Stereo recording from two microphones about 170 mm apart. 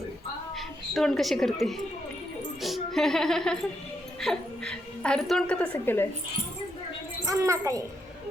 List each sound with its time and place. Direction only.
0.5 s a woman's voice: centre (ahead or behind)
7.3 s a woman's voice: 20° right (ahead or behind)